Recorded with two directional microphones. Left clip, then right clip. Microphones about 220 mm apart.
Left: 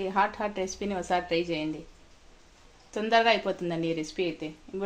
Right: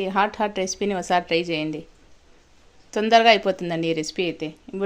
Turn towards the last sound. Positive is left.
turn(degrees=-55)  # may be behind; listen again after turning